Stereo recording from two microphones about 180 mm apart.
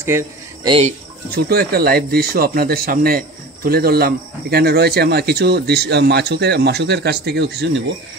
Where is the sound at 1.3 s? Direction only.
65° right (ahead or behind).